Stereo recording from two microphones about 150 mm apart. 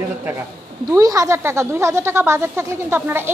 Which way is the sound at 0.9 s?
25° right (ahead or behind).